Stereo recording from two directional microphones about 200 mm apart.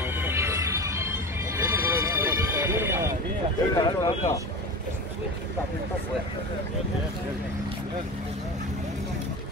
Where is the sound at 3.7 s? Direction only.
20° left (ahead or behind).